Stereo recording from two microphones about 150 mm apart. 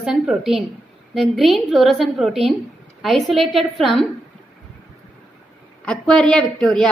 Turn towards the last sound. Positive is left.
turn(degrees=5)  # may be behind; listen again after turning